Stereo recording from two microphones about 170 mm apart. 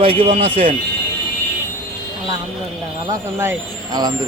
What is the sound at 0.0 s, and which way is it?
Speech, 35° right (ahead or behind).